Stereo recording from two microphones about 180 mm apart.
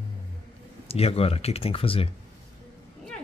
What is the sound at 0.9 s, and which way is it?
Speech, 35° left (ahead or behind).